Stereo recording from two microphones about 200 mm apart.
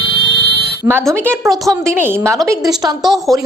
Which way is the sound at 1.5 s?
Centre (ahead or behind).